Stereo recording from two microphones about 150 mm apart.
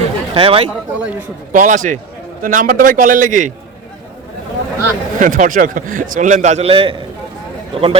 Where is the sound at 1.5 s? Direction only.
60° right (ahead or behind).